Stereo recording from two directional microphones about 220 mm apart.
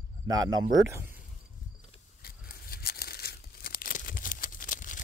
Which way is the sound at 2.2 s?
45° left (ahead or behind).